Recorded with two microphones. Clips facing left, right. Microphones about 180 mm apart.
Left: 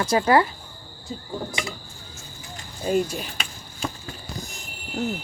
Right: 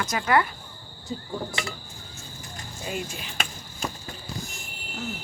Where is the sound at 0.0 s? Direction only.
30° left (ahead or behind).